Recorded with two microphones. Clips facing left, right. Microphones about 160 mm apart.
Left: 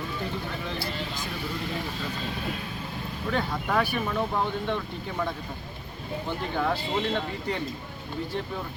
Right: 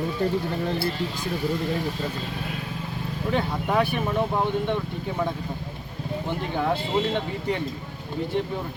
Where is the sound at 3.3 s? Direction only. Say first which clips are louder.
Right 3 dB; 20° right (ahead or behind).